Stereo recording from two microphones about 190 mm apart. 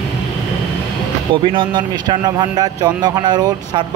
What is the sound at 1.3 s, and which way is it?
Speech, 25° right (ahead or behind).